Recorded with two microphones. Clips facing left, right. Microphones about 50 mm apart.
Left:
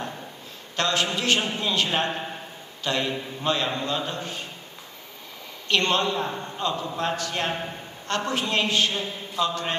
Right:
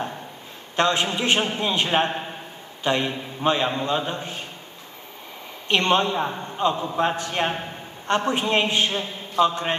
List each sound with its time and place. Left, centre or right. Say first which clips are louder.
0.7 s a man's voice: right 3 dB; right
5.7 s a man's voice: right 3 dB; right